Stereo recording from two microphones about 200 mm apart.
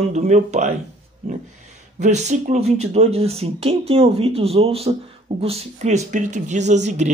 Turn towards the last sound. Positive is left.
turn(degrees=-35)  # may be behind; listen again after turning